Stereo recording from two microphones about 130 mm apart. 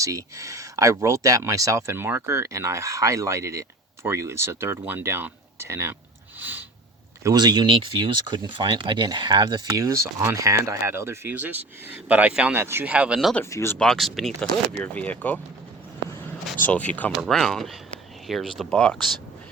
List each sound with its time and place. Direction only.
0.0 s speech: 25° right (ahead or behind)
6.4 s sniff: 15° right (ahead or behind)
7.3 s speech: 30° right (ahead or behind); by 13.3 s 5° right (ahead or behind)
13.3 s speech: 20° left (ahead or behind)
13.7 s speech: 5° left (ahead or behind)
16.6 s speech: 10° left (ahead or behind)